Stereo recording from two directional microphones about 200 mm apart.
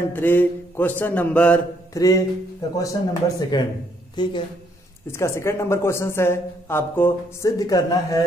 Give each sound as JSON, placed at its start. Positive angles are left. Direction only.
{"t": 0.1, "sound": "a woman's voice", "side_deg": 10}